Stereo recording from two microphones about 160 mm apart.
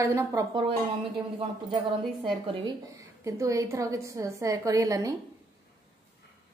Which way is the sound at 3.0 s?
20° right (ahead or behind).